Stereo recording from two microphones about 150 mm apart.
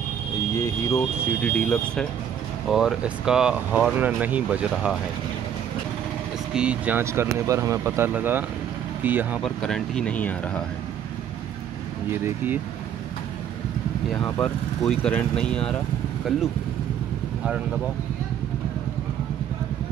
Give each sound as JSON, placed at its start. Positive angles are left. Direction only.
{"t": 0.6, "sound": "speech", "side_deg": 20}
{"t": 2.7, "sound": "speech", "side_deg": -5}
{"t": 6.5, "sound": "speech", "side_deg": -10}
{"t": 9.4, "sound": "speech", "side_deg": 5}
{"t": 12.1, "sound": "speech", "side_deg": -15}
{"t": 14.1, "sound": "speech", "side_deg": 5}